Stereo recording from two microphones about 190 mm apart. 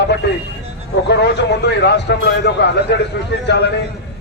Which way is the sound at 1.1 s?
65° left (ahead or behind).